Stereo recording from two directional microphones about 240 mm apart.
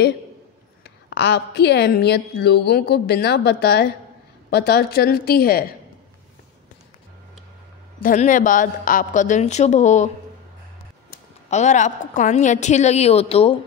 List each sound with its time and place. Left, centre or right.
1.1 s a woman's voice: left
8.0 s a woman's voice: left
11.5 s a woman's voice: left